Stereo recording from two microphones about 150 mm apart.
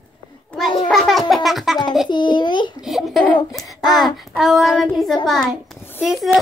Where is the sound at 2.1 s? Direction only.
30° left (ahead or behind).